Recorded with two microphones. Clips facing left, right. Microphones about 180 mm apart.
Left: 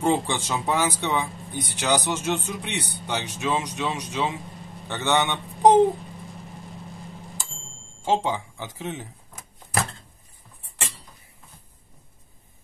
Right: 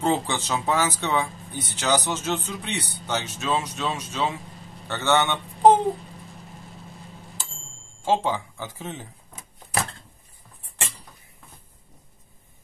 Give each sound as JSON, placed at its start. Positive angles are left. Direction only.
{"t": 0.0, "sound": "a man's voice", "side_deg": 15}
{"t": 8.1, "sound": "speech", "side_deg": 15}